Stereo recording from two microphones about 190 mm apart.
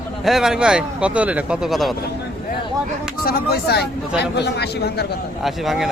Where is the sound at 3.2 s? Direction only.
55° left (ahead or behind).